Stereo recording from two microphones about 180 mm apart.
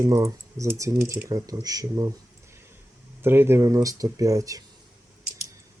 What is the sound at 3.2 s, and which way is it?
Speech, 15° right (ahead or behind).